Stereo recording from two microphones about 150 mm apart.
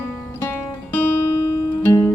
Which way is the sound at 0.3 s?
15° left (ahead or behind).